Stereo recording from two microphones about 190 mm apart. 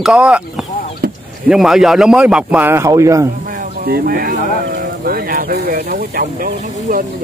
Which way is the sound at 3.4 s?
50° right (ahead or behind).